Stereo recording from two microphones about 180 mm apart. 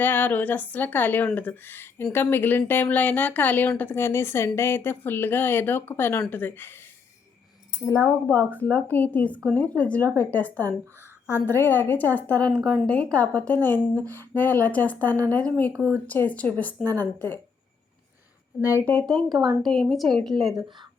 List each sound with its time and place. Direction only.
0.0 s speech: 10° left (ahead or behind)
7.9 s a woman's voice: 15° left (ahead or behind)
18.6 s speech: 10° left (ahead or behind)
19.3 s a woman's voice: 25° right (ahead or behind)
19.6 s a woman's voice: centre (ahead or behind)